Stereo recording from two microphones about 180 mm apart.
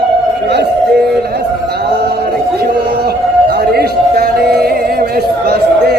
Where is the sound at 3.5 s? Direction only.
60° right (ahead or behind).